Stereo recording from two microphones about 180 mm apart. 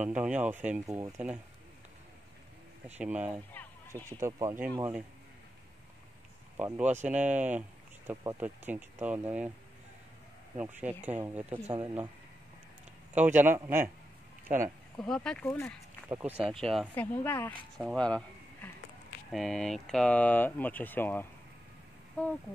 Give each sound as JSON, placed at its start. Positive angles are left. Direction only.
{"t": 0.0, "sound": "speech", "side_deg": -10}
{"t": 3.0, "sound": "speech", "side_deg": -5}
{"t": 3.6, "sound": "a sound", "side_deg": 10}
{"t": 4.2, "sound": "speech", "side_deg": -20}
{"t": 6.5, "sound": "speech", "side_deg": -10}
{"t": 10.6, "sound": "speech", "side_deg": -10}
{"t": 11.5, "sound": "speech", "side_deg": -30}
{"t": 11.8, "sound": "speech", "side_deg": -10}
{"t": 13.1, "sound": "speech", "side_deg": -10}
{"t": 15.0, "sound": "speech", "side_deg": 5}
{"t": 15.4, "sound": "speech", "side_deg": 15}
{"t": 16.1, "sound": "speech", "side_deg": -10}